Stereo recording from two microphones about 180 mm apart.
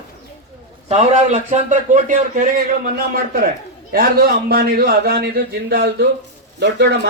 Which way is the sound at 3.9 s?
60° right (ahead or behind).